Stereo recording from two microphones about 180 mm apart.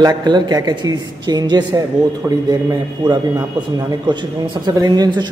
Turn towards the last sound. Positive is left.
turn(degrees=-25)  # may be behind; listen again after turning